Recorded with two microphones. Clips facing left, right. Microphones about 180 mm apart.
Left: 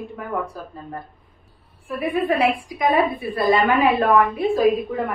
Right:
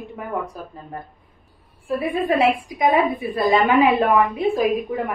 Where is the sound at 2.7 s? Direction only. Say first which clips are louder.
Right 1 dB; 20° right (ahead or behind).